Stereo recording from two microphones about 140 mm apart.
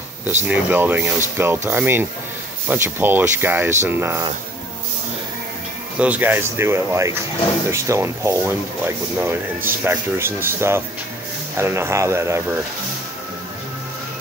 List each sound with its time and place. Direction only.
0.4 s speech: 15° right (ahead or behind)
5.9 s speech: 10° right (ahead or behind)